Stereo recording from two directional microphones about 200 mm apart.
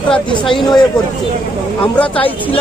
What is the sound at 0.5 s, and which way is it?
Speech, 20° left (ahead or behind).